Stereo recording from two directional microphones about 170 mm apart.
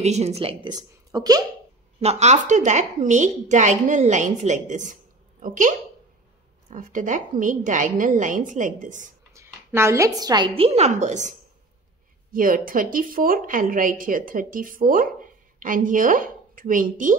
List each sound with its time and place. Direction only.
0.0 s a woman's voice: 40° right (ahead or behind); by 1.4 s 20° right (ahead or behind)
2.0 s a woman's voice: 40° right (ahead or behind)
9.3 s a woman's voice: 15° right (ahead or behind); by 17.1 s 50° right (ahead or behind)